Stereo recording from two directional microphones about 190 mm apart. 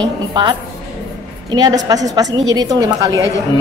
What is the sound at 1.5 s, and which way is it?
A woman's voice, 20° right (ahead or behind).